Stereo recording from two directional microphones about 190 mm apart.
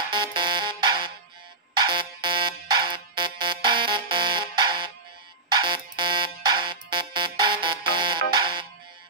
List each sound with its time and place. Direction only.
0.1 s music: 25° right (ahead or behind)
5.5 s alarm: 25° right (ahead or behind)
7.9 s music: 25° right (ahead or behind)